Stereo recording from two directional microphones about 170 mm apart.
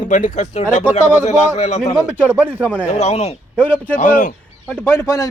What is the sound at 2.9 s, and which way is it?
Speech, 40° left (ahead or behind).